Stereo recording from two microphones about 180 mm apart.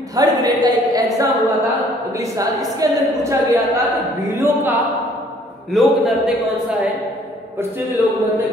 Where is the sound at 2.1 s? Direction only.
20° right (ahead or behind).